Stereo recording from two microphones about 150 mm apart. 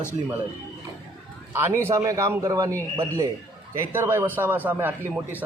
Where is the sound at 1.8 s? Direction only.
20° right (ahead or behind).